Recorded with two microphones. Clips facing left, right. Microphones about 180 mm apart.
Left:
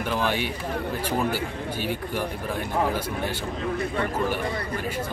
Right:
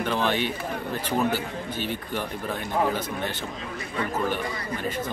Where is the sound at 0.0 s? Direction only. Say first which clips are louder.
Right 1 dB; 10° left (ahead or behind).